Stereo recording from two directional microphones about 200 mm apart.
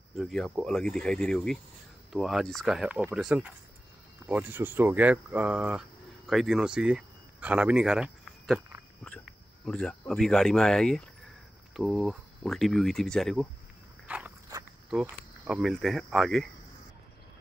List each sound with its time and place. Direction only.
0.1 s speech: centre (ahead or behind)
9.7 s speech: 5° left (ahead or behind)
14.0 s walk: 5° right (ahead or behind)
14.5 s walk: 15° right (ahead or behind)
14.9 s speech: 5° right (ahead or behind)